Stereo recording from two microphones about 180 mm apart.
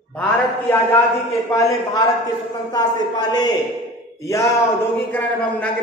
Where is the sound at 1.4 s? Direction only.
20° left (ahead or behind).